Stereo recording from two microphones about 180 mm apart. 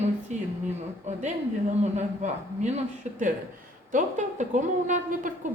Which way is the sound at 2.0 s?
40° right (ahead or behind).